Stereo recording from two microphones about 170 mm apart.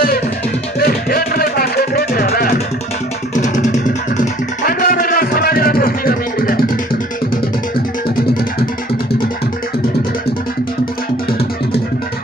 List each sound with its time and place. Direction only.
0.7 s music: 60° left (ahead or behind)
4.6 s music: 55° left (ahead or behind)